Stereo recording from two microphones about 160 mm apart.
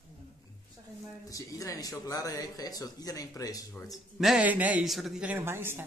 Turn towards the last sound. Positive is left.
turn(degrees=-15)  # may be behind; listen again after turning